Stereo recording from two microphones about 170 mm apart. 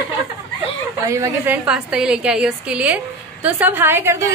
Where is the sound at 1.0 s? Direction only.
15° right (ahead or behind).